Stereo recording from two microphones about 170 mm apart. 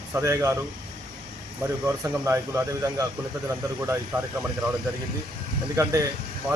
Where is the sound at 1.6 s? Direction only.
15° right (ahead or behind).